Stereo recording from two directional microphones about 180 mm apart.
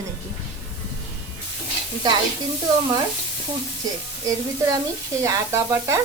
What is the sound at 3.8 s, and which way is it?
A woman's voice, 20° right (ahead or behind).